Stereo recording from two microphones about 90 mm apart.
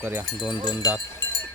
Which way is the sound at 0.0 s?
20° right (ahead or behind).